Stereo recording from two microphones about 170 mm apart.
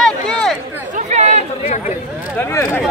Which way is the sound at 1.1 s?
40° right (ahead or behind).